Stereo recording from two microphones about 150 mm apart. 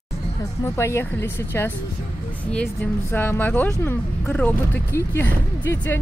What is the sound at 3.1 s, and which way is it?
Speech, 15° left (ahead or behind).